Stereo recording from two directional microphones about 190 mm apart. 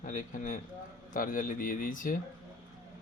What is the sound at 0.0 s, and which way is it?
Speech, 45° left (ahead or behind).